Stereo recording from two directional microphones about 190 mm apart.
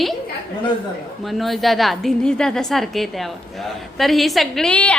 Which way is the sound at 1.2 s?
Centre (ahead or behind).